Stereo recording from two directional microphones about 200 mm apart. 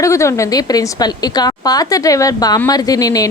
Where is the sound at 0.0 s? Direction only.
15° left (ahead or behind).